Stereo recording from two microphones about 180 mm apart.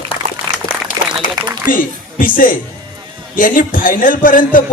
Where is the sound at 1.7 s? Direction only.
50° left (ahead or behind).